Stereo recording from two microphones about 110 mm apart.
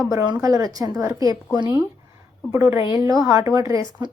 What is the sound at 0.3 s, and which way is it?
A woman's voice, 30° right (ahead or behind).